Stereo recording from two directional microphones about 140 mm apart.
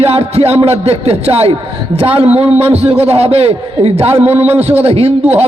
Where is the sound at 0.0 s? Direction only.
45° right (ahead or behind).